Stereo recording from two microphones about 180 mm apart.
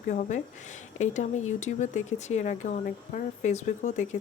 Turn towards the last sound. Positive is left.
turn(degrees=40)  # may be behind; listen again after turning